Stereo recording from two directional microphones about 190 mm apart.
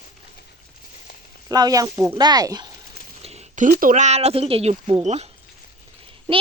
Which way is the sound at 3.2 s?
35° right (ahead or behind).